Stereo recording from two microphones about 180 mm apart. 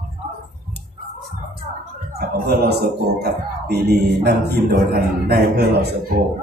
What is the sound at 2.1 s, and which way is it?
Speech, 60° right (ahead or behind).